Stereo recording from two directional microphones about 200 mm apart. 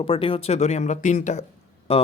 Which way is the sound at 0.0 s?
25° left (ahead or behind).